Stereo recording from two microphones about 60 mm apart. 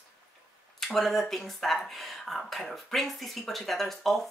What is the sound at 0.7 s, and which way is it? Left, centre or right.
Speech, centre.